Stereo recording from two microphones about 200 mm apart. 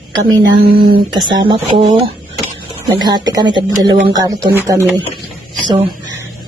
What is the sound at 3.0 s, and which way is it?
Speech, 20° right (ahead or behind).